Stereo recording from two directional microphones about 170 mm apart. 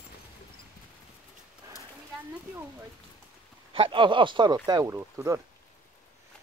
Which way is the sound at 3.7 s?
30° right (ahead or behind).